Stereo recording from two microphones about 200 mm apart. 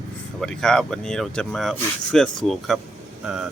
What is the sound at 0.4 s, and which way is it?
Speech, 5° left (ahead or behind).